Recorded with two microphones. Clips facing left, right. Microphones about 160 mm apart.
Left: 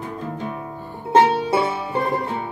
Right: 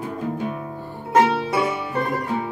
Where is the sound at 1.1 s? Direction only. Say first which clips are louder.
Left 2 dB; 30° left (ahead or behind).